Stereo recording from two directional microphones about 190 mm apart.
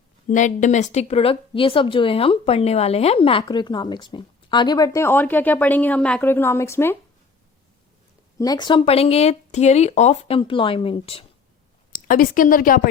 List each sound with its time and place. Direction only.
0.3 s speech: 40° left (ahead or behind); by 6.9 s 15° left (ahead or behind)
8.4 s speech: 20° left (ahead or behind)
11.9 s a woman's voice: 45° left (ahead or behind)